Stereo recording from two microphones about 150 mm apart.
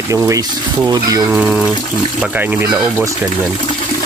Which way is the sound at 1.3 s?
10° right (ahead or behind).